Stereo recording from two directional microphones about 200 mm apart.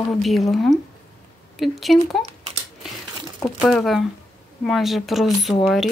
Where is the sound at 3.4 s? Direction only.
Centre (ahead or behind).